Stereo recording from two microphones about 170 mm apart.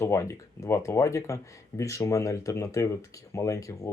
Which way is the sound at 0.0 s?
15° left (ahead or behind).